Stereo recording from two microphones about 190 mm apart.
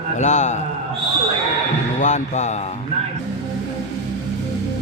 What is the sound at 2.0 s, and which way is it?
Speech, 40° left (ahead or behind).